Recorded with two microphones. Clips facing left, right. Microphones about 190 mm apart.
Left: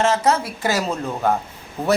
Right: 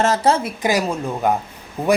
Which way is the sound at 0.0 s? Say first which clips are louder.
Right 1 dB; 35° right (ahead or behind).